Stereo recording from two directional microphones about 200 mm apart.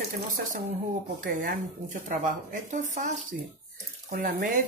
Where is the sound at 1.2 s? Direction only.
40° right (ahead or behind).